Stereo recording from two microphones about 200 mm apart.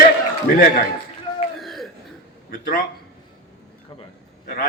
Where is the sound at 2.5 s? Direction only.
50° left (ahead or behind).